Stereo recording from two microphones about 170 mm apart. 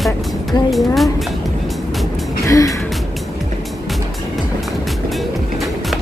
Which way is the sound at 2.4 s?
20° left (ahead or behind).